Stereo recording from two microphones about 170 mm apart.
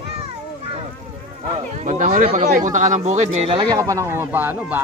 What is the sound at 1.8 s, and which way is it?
Speech, 45° right (ahead or behind).